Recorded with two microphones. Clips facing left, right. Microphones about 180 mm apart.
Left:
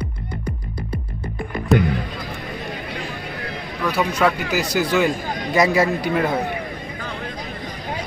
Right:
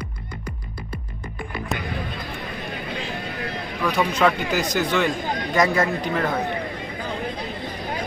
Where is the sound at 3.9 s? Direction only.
5° left (ahead or behind).